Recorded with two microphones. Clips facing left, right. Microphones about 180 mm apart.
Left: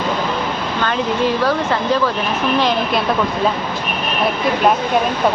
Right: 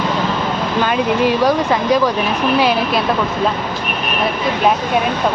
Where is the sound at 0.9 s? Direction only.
15° right (ahead or behind).